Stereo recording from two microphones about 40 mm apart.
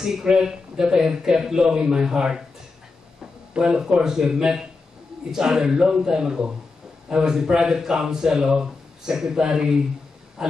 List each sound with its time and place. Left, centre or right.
0.0 s speech: centre
3.5 s a man's voice: right